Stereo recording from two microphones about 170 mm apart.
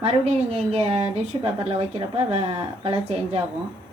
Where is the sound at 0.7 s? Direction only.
35° right (ahead or behind).